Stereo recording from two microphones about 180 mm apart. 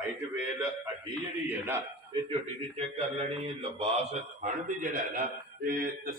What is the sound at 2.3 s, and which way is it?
A man's voice, 35° right (ahead or behind).